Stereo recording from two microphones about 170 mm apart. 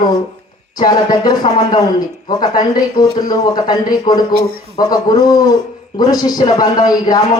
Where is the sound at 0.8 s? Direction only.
25° left (ahead or behind).